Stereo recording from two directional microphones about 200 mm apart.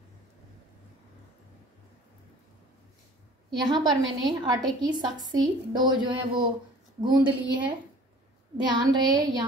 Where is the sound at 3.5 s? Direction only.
20° right (ahead or behind).